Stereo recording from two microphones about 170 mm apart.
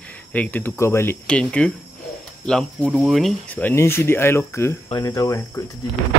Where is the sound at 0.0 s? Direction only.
10° left (ahead or behind).